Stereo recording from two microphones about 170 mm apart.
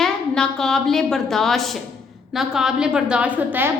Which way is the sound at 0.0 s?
5° left (ahead or behind).